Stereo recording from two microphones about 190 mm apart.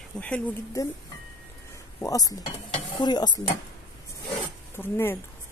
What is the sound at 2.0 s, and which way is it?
Cutlery, 20° left (ahead or behind).